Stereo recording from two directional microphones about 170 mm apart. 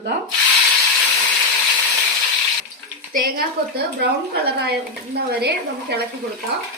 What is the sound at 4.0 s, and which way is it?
Speech, 75° right (ahead or behind).